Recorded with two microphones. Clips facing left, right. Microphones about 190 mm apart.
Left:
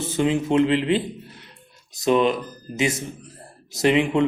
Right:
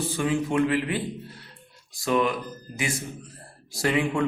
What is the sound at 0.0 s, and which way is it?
A man's voice, 25° left (ahead or behind).